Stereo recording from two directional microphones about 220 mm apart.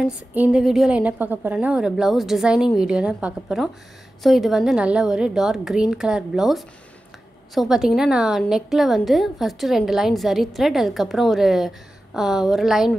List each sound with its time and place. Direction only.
0.0 s a woman's voice: 5° right (ahead or behind)